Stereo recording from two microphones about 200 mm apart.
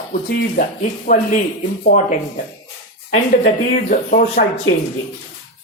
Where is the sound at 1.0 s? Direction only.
40° left (ahead or behind).